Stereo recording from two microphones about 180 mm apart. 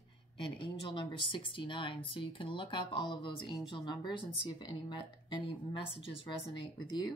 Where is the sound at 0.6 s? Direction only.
25° left (ahead or behind).